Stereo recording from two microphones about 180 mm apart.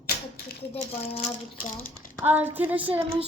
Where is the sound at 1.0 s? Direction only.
35° left (ahead or behind).